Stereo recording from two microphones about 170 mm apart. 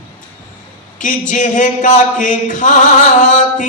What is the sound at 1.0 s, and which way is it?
Speech, 50° left (ahead or behind).